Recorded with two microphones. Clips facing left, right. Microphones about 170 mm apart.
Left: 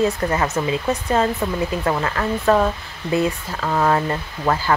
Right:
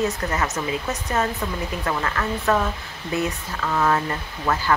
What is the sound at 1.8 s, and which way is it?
Speech, 30° left (ahead or behind).